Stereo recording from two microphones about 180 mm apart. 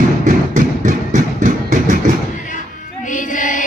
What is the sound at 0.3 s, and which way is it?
Vehicle, 45° right (ahead or behind).